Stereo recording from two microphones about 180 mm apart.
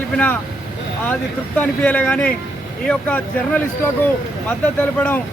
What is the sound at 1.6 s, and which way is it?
Speech, 10° left (ahead or behind).